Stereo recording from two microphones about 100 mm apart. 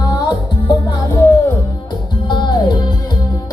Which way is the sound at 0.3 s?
50° left (ahead or behind).